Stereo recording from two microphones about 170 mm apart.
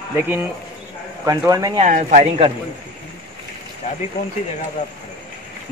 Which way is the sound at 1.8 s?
50° right (ahead or behind).